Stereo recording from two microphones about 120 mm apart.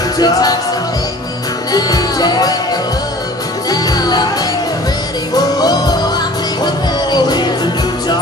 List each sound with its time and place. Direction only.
0.2 s music: 30° left (ahead or behind)
1.7 s music: 30° left (ahead or behind)
3.7 s music: 30° left (ahead or behind)
5.3 s music: 35° left (ahead or behind)